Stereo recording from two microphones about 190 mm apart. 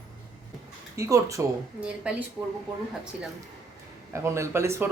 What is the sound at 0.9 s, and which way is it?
Speech, 15° right (ahead or behind).